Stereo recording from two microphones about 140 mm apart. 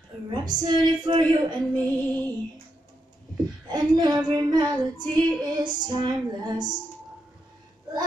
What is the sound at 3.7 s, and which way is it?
Child singing, 30° right (ahead or behind).